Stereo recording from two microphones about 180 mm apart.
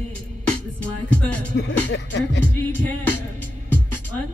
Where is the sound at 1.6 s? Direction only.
85° left.